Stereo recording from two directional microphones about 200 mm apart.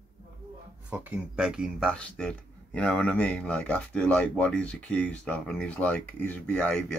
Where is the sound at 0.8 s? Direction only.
5° right (ahead or behind).